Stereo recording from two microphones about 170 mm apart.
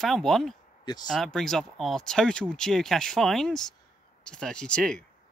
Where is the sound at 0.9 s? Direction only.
25° left (ahead or behind).